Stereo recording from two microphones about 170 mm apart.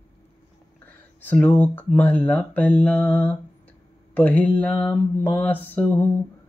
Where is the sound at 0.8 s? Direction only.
10° left (ahead or behind).